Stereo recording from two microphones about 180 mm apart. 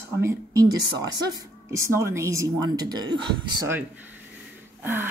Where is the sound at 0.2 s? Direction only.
15° right (ahead or behind).